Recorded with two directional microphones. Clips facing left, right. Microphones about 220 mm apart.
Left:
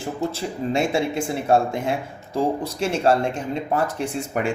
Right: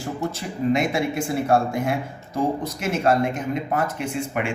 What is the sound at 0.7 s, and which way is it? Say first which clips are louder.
Speech: even; 30° left (ahead or behind).